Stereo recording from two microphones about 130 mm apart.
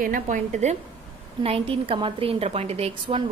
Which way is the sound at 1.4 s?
45° right (ahead or behind).